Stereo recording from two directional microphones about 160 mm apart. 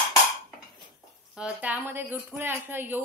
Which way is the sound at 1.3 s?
10° right (ahead or behind).